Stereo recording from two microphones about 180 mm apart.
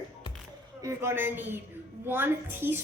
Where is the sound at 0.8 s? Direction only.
15° right (ahead or behind).